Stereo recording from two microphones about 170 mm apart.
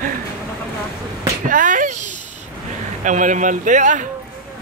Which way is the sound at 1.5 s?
50° right (ahead or behind).